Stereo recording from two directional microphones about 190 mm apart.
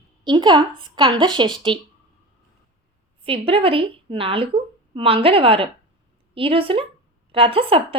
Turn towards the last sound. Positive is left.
turn(degrees=-30)  # may be behind; listen again after turning